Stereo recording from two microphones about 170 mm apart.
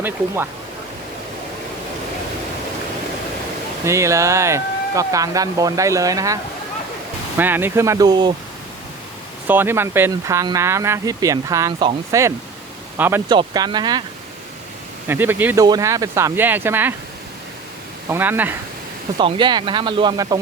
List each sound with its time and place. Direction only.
3.8 s speech: 15° right (ahead or behind)
9.5 s speech: 10° right (ahead or behind)
13.2 s speech: 25° right (ahead or behind)
15.0 s speech: 10° right (ahead or behind)
18.1 s speech: 10° right (ahead or behind)
19.1 s speech: 25° right (ahead or behind)